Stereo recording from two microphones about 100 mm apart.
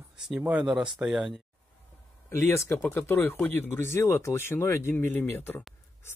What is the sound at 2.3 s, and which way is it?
Speech, 25° left (ahead or behind).